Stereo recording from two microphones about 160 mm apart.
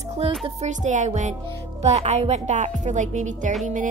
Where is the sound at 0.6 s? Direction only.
50° right (ahead or behind).